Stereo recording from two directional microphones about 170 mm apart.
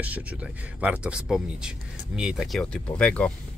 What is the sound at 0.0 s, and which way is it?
Speech, 10° right (ahead or behind).